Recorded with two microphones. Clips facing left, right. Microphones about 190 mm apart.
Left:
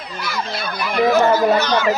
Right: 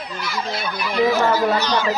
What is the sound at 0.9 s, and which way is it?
Speech, 55° left (ahead or behind).